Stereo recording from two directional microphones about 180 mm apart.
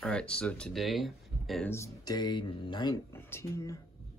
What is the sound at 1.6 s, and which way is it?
Speech, 15° left (ahead or behind).